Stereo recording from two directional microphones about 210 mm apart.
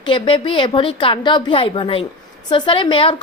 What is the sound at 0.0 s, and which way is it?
A woman's voice, 25° left (ahead or behind).